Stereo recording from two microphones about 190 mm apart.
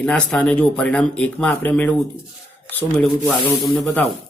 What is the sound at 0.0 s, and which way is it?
Speech, 5° left (ahead or behind).